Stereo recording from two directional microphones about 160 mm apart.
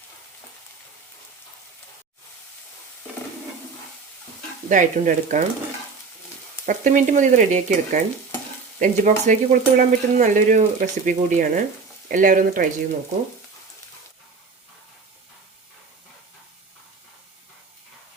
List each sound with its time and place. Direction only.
4.7 s stir: 55° right (ahead or behind)
6.7 s stir: 50° right (ahead or behind)
12.0 s speech: 55° right (ahead or behind)